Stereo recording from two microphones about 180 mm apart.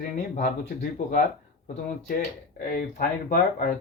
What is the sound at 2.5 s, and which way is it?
Speech, 50° left (ahead or behind).